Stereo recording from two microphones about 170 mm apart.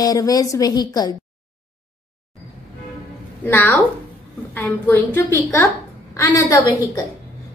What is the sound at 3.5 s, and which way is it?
A woman's voice, 10° left (ahead or behind).